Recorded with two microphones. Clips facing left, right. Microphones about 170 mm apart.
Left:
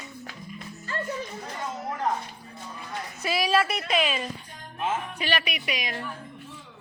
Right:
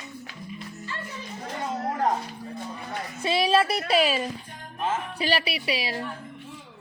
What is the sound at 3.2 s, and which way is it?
Speech, 30° right (ahead or behind).